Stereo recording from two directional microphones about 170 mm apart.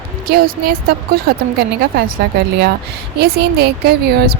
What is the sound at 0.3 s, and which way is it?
A woman's voice, 65° right (ahead or behind).